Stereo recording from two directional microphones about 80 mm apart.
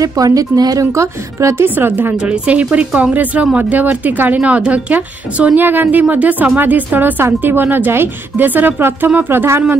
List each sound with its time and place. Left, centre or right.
0.0 s a woman's voice: right
2.2 s speech: centre